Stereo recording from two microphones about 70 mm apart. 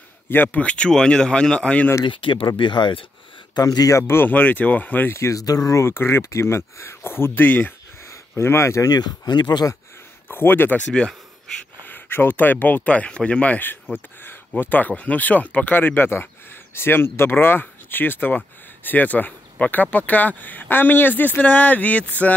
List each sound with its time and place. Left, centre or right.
0.3 s speech: left
2.4 s speech: left
3.5 s speech: left
4.1 s speech: left
5.1 s speech: left
5.4 s speech: left
8.1 s speech: left
8.8 s speech: left
10.2 s speech: left
10.9 s speech: centre
11.8 s speech: left